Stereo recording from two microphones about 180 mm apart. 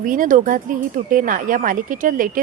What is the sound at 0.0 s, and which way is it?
A woman's voice, 50° right (ahead or behind).